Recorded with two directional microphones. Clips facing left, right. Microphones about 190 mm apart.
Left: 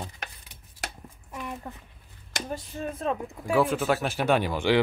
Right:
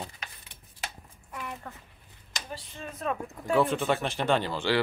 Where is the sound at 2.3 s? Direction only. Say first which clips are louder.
Left 7 dB; 45° left (ahead or behind).